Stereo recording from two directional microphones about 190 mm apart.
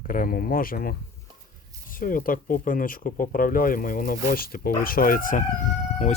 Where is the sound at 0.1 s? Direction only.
50° left (ahead or behind).